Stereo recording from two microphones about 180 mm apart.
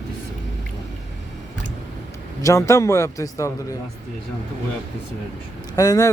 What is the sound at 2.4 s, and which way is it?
A man's voice, 15° left (ahead or behind).